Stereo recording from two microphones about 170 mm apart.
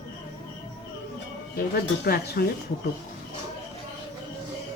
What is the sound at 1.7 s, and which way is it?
Speech, 65° left (ahead or behind).